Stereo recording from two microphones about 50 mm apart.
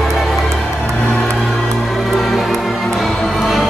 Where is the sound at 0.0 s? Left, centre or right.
Centre.